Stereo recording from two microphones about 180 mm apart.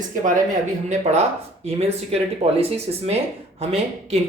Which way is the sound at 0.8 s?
35° right (ahead or behind).